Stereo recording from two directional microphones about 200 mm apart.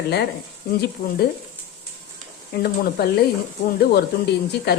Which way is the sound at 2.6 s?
50° left (ahead or behind).